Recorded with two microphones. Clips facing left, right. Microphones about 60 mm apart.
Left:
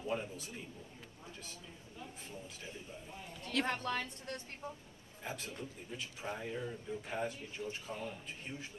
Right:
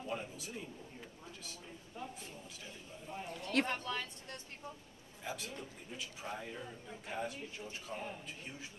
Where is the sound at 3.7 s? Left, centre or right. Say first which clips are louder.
Left 2 dB; left.